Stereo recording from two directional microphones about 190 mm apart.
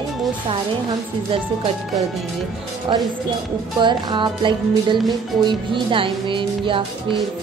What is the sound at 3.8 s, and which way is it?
Speech, 25° right (ahead or behind).